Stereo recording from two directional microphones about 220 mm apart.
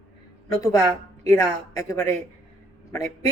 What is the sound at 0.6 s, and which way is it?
Speech, 15° left (ahead or behind).